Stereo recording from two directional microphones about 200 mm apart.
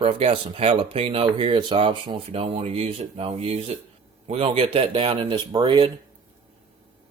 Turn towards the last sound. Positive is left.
turn(degrees=-20)  # may be behind; listen again after turning